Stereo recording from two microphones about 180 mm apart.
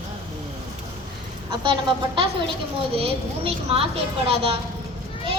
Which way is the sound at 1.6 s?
30° right (ahead or behind).